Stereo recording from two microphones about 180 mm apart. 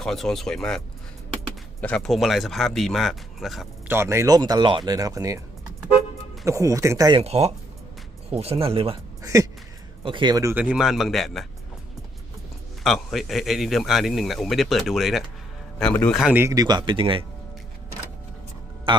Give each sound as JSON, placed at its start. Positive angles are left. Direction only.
{"t": 0.0, "sound": "a man's voice", "side_deg": 0}
{"t": 1.8, "sound": "a man's voice", "side_deg": 5}
{"t": 3.8, "sound": "speech", "side_deg": -15}
{"t": 6.4, "sound": "speech", "side_deg": -15}
{"t": 7.2, "sound": "speech", "side_deg": -35}
{"t": 9.2, "sound": "a sound", "side_deg": -15}
{"t": 10.0, "sound": "speech", "side_deg": -25}
{"t": 10.5, "sound": "a man's voice", "side_deg": -5}
{"t": 12.8, "sound": "a man's voice", "side_deg": 0}
{"t": 16.2, "sound": "speech", "side_deg": -10}
{"t": 18.9, "sound": "a man's voice", "side_deg": -25}